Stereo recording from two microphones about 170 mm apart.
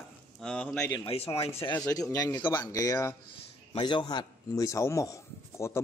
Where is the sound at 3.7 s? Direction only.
30° left (ahead or behind).